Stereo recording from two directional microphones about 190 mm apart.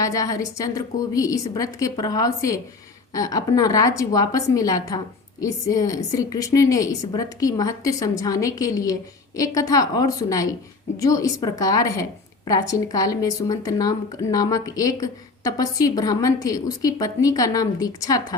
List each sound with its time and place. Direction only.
0.0 s a woman's voice: 20° left (ahead or behind)